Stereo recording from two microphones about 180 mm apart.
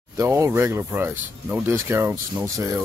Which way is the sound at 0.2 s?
15° right (ahead or behind).